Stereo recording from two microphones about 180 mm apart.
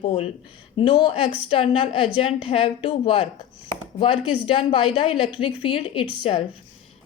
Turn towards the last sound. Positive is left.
turn(degrees=30)  # may be behind; listen again after turning